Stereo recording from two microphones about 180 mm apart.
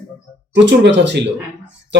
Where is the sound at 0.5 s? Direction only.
80° right.